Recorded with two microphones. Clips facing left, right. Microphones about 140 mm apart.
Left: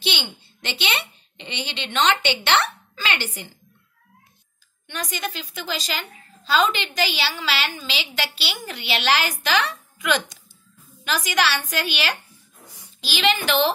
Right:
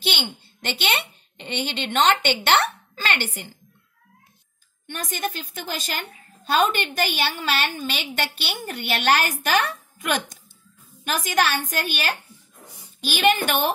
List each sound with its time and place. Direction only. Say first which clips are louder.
0.0 s a child's voice: right 1 dB; 45° right (ahead or behind)
4.8 s a woman's voice: right 1 dB; 50° right (ahead or behind)
13.0 s a woman's voice: right 2 dB; 55° right (ahead or behind)